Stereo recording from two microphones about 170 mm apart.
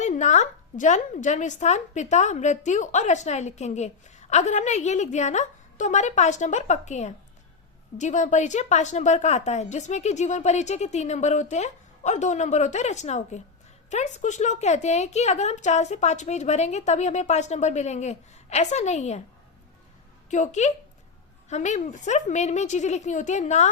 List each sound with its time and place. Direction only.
0.0 s a woman's voice: 45° left (ahead or behind)
20.3 s a woman's voice: 45° left (ahead or behind)